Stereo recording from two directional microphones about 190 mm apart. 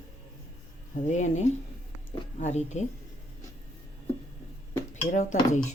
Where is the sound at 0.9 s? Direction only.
40° left (ahead or behind).